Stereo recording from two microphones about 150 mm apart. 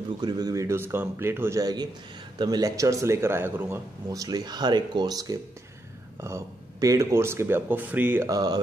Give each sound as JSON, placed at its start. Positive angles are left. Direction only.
{"t": 0.2, "sound": "speech", "side_deg": -25}
{"t": 8.3, "sound": "speech", "side_deg": -25}